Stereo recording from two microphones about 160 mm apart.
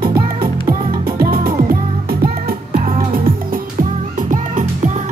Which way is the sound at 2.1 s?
70° right (ahead or behind).